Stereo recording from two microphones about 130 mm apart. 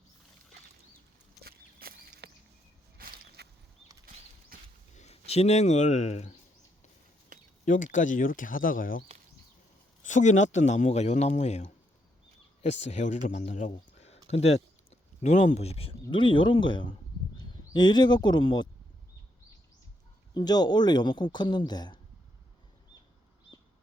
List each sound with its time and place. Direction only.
4.5 s a sound: 90° right
4.9 s speech: 55° left (ahead or behind)
7.6 s speech: 85° left
10.1 s speech: 70° left (ahead or behind)
15.2 s speech: 65° left (ahead or behind)
16.0 s speech: 40° left (ahead or behind)
20.3 s speech: 30° left (ahead or behind)